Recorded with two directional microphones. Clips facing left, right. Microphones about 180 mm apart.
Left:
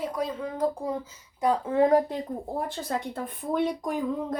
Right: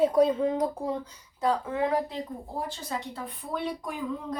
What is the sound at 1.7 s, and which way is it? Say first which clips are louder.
A woman's voice: left 6 dB; 40° left (ahead or behind).